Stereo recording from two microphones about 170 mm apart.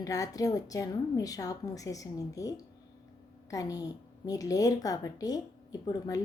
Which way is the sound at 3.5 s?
20° left (ahead or behind).